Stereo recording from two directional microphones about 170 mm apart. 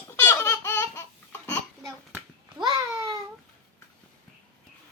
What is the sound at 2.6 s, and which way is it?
Cat, 25° right (ahead or behind).